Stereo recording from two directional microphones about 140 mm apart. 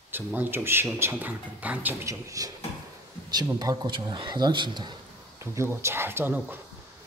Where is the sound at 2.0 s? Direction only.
25° right (ahead or behind).